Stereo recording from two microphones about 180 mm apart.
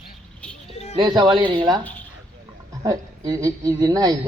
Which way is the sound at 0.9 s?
25° right (ahead or behind).